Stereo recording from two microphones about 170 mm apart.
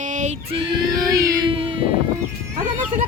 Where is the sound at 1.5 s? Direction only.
35° right (ahead or behind).